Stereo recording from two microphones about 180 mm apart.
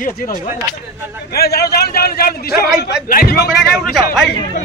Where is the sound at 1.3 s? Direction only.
60° left (ahead or behind).